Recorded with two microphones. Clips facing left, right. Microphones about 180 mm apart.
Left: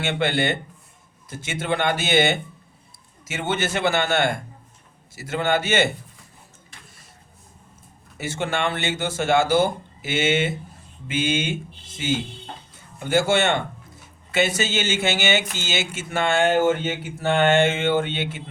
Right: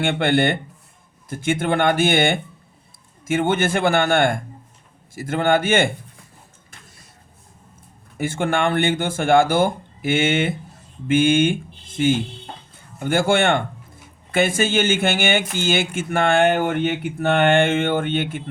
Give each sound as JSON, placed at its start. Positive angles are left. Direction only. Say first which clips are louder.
{"t": 0.0, "sound": "speech", "louder": "right 4 dB", "side_deg": -55}
{"t": 8.2, "sound": "speech", "louder": "right 4 dB", "side_deg": -50}